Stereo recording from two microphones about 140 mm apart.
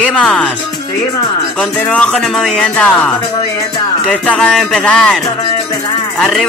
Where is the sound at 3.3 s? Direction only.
35° left (ahead or behind).